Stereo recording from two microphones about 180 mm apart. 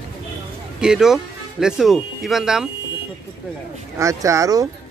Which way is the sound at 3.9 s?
15° right (ahead or behind).